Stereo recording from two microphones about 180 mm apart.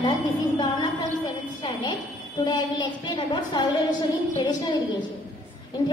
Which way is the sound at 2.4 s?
25° left (ahead or behind).